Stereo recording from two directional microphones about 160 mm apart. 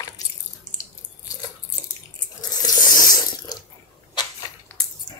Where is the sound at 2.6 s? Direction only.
25° left (ahead or behind).